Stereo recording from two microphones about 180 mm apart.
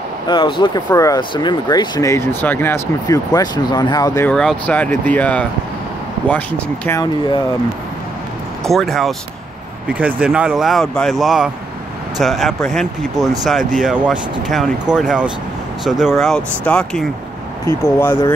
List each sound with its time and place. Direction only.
0.3 s speech: 25° left (ahead or behind)
4.3 s speech: 5° left (ahead or behind)
8.6 s speech: centre (ahead or behind)